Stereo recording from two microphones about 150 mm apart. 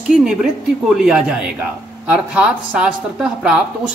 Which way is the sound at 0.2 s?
5° right (ahead or behind).